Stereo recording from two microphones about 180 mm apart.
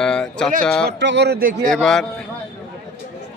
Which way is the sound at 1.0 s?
75° right (ahead or behind).